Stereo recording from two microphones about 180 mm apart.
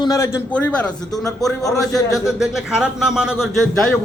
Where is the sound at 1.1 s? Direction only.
20° left (ahead or behind).